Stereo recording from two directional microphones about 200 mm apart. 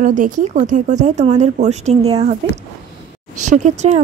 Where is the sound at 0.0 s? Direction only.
40° right (ahead or behind).